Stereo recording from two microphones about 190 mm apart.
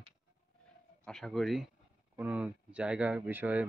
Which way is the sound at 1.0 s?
Centre (ahead or behind).